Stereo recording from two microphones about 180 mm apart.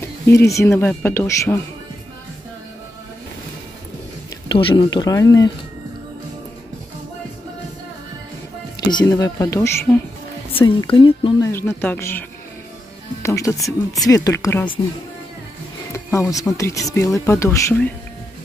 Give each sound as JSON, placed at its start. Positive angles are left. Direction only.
{"t": 0.3, "sound": "speech", "side_deg": 15}
{"t": 4.5, "sound": "speech", "side_deg": 25}
{"t": 9.0, "sound": "speech", "side_deg": 20}
{"t": 10.9, "sound": "speech", "side_deg": 30}
{"t": 11.4, "sound": "speech", "side_deg": 15}
{"t": 15.9, "sound": "speech", "side_deg": 15}